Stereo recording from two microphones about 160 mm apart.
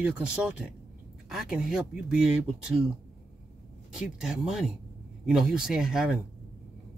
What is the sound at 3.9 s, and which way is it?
Speech, 5° right (ahead or behind).